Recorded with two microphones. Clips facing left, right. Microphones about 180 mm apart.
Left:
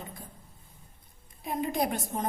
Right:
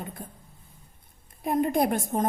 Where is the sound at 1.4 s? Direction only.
50° right (ahead or behind).